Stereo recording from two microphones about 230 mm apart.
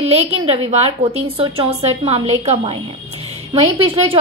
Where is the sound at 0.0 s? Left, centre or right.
Right.